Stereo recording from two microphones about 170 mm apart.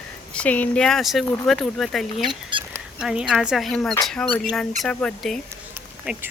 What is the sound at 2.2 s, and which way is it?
Speech, 30° right (ahead or behind).